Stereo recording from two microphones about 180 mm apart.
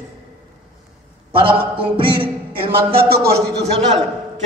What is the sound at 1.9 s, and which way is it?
Music, 30° right (ahead or behind).